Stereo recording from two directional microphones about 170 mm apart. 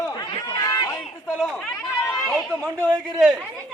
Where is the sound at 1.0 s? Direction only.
5° left (ahead or behind).